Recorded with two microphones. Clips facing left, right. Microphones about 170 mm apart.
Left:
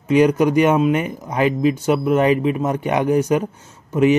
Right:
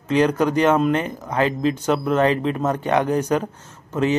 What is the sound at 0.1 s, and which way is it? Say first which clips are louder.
Speech: left 4 dB; 10° left (ahead or behind).